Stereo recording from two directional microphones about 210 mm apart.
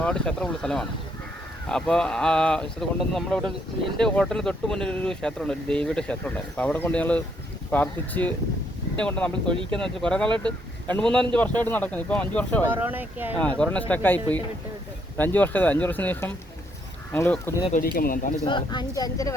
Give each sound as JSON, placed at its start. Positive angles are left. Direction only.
{"t": 0.0, "sound": "speech", "side_deg": 5}
{"t": 9.5, "sound": "speech", "side_deg": -25}
{"t": 9.8, "sound": "speech", "side_deg": 5}
{"t": 12.7, "sound": "speech", "side_deg": -10}
{"t": 13.4, "sound": "speech", "side_deg": 5}
{"t": 15.2, "sound": "speech", "side_deg": 10}
{"t": 17.7, "sound": "speech", "side_deg": 45}
{"t": 18.4, "sound": "speech", "side_deg": 20}